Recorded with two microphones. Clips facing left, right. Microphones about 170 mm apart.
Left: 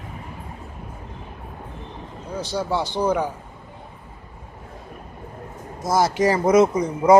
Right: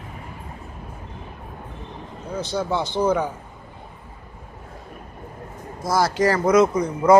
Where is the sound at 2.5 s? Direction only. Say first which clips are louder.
Even; 10° left (ahead or behind).